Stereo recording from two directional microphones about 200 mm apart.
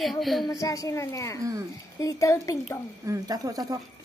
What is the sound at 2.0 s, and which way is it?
Speech, 15° left (ahead or behind).